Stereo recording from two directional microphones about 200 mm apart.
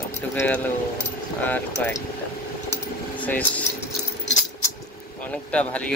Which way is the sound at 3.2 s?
5° left (ahead or behind).